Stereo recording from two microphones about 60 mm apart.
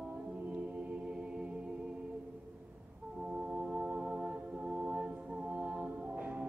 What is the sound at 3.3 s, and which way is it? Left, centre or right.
Music, centre.